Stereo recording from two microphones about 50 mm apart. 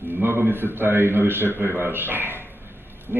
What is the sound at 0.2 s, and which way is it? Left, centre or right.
A man's voice, right.